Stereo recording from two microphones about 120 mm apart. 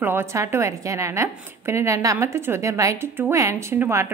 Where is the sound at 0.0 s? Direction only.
20° right (ahead or behind).